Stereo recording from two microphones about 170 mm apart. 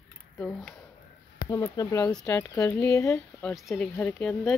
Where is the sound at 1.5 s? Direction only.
20° left (ahead or behind).